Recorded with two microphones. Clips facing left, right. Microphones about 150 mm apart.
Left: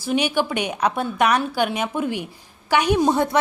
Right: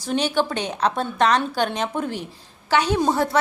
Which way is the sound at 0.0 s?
10° left (ahead or behind).